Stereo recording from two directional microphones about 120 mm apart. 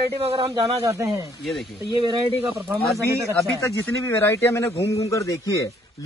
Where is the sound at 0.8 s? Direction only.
25° right (ahead or behind).